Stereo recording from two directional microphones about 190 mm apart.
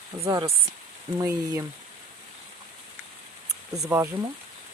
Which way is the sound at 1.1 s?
15° right (ahead or behind).